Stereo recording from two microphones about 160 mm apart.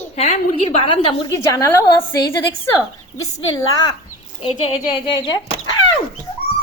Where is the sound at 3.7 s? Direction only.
20° left (ahead or behind).